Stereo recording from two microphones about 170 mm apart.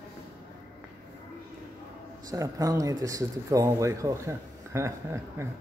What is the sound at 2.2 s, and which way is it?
Speech, 20° right (ahead or behind).